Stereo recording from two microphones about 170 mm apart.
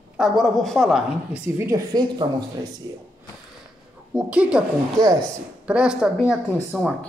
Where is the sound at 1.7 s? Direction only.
25° right (ahead or behind).